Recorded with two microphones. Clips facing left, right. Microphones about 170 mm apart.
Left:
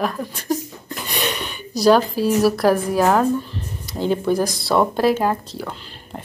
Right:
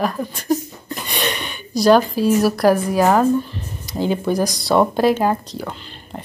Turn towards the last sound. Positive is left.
turn(degrees=0)  # may be behind; listen again after turning